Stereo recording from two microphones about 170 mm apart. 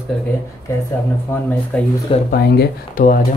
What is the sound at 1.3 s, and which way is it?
Speech, 10° left (ahead or behind).